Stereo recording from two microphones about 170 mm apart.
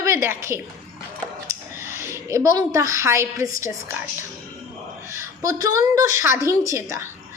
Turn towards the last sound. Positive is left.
turn(degrees=-20)  # may be behind; listen again after turning